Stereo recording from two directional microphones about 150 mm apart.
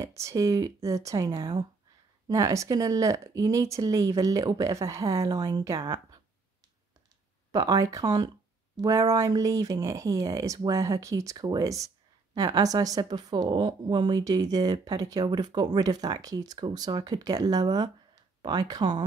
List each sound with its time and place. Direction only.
0.0 s a woman's voice: 20° right (ahead or behind)
7.5 s a woman's voice: 25° right (ahead or behind)